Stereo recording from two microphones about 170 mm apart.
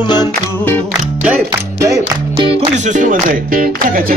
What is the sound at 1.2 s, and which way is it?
Music, 15° right (ahead or behind).